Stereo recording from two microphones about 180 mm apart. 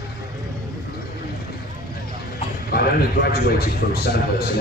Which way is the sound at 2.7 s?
60° left (ahead or behind).